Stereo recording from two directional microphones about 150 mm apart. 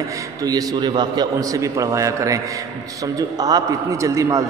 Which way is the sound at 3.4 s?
25° right (ahead or behind).